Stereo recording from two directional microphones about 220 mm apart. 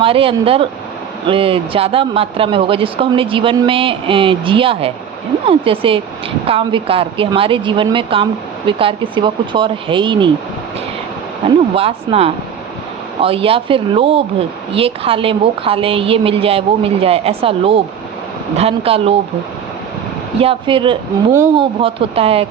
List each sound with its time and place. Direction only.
0.0 s a woman's voice: 25° right (ahead or behind)
11.7 s a woman's voice: 25° right (ahead or behind)
20.4 s a woman's voice: 25° right (ahead or behind)